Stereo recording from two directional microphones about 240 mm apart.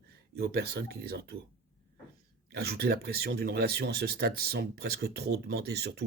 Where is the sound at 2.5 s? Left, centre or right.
Right.